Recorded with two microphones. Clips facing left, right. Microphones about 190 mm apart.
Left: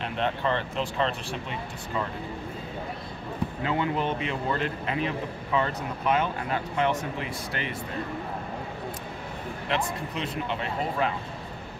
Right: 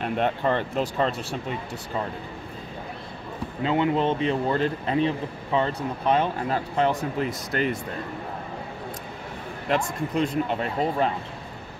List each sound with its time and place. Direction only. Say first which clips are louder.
0.0 s speech: right 4 dB; 50° right (ahead or behind)
3.6 s speech: right 6 dB; 25° right (ahead or behind); by 7.7 s 45° right (ahead or behind)
9.7 s speech: right 5 dB; 45° right (ahead or behind)